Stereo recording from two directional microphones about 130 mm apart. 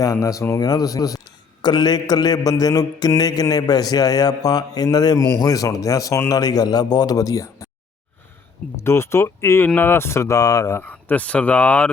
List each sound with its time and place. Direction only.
0.0 s mantra: 25° left (ahead or behind)
8.7 s mantra: 20° left (ahead or behind)
9.6 s speech: 15° left (ahead or behind)